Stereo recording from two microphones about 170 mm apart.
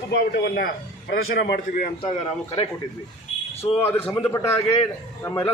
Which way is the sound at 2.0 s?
35° left (ahead or behind).